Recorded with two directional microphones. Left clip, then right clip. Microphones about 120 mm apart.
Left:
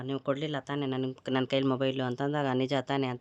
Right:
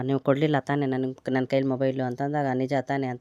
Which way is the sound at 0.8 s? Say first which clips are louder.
Right 6 dB; 45° right (ahead or behind).